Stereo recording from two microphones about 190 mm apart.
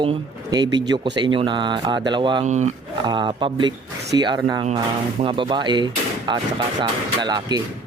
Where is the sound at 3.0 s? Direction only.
25° right (ahead or behind).